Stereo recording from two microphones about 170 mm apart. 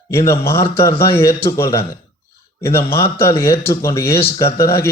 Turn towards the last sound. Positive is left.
turn(degrees=15)  # may be behind; listen again after turning